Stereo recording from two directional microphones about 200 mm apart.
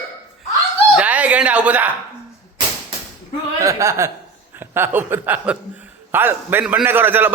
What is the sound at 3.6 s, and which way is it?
A man's voice, 15° right (ahead or behind).